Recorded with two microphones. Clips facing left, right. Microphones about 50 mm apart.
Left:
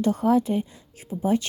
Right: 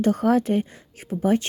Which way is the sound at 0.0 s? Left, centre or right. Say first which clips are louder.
Right 1 dB; right.